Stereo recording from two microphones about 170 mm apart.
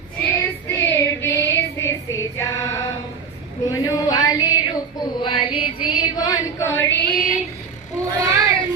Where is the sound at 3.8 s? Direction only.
25° left (ahead or behind).